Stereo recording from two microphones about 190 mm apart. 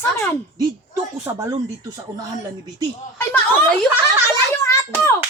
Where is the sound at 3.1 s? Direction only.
10° left (ahead or behind).